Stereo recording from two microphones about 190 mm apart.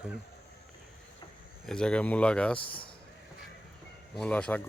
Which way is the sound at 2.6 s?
30° left (ahead or behind).